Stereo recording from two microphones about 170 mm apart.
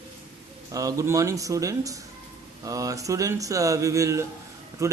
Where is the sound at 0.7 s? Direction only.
20° right (ahead or behind).